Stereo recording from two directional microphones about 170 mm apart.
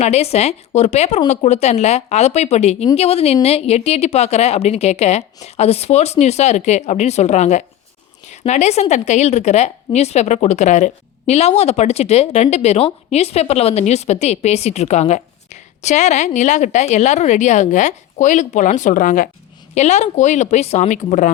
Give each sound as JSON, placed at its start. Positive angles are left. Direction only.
{"t": 0.0, "sound": "speech", "side_deg": 40}